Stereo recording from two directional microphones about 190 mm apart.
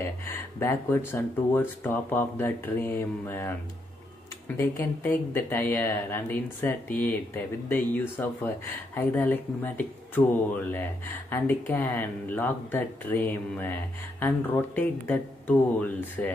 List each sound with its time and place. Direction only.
0.2 s speech: 10° left (ahead or behind)
4.6 s speech: 15° left (ahead or behind)
14.8 s speech: 10° left (ahead or behind)